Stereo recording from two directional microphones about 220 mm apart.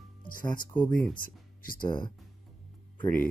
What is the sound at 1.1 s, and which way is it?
Music, 40° left (ahead or behind).